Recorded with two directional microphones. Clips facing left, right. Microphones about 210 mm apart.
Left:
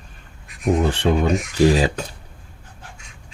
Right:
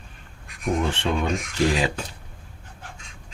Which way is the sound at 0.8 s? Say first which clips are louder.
Left 5 dB; 40° left (ahead or behind).